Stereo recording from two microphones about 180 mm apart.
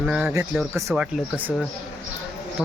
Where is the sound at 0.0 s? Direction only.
5° right (ahead or behind).